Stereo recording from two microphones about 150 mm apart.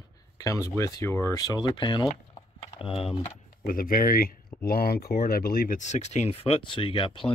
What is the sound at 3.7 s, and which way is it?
Speech, 70° left (ahead or behind).